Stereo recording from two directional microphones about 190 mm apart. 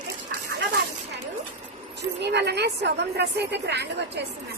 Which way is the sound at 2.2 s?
60° right (ahead or behind).